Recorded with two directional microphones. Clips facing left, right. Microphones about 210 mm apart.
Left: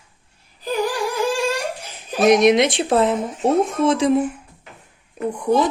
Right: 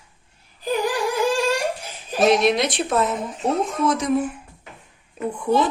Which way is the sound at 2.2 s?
20° left (ahead or behind).